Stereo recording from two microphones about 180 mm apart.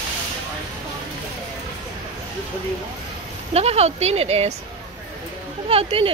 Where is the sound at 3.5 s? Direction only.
35° right (ahead or behind).